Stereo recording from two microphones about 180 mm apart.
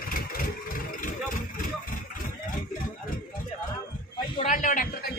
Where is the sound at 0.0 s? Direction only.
50° left (ahead or behind).